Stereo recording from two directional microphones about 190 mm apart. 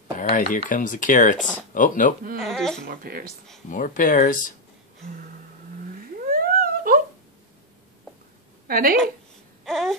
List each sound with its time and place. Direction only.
0.2 s speech: 45° left (ahead or behind)
2.4 s speech: centre (ahead or behind)
2.9 s speech: 50° right (ahead or behind)
3.7 s speech: 45° left (ahead or behind)
6.3 s a sound: 50° right (ahead or behind)
8.6 s a woman's voice: 50° right (ahead or behind)
9.7 s wail: centre (ahead or behind)